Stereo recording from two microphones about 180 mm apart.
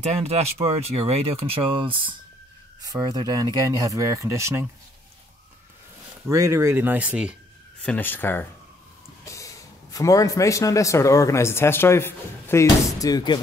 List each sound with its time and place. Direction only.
0.0 s speech: 35° right (ahead or behind); by 4.6 s 15° right (ahead or behind)
6.2 s speech: 15° right (ahead or behind)
7.8 s a man's voice: 10° left (ahead or behind)